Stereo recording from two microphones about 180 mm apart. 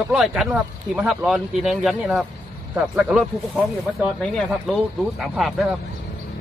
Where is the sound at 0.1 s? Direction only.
5° right (ahead or behind).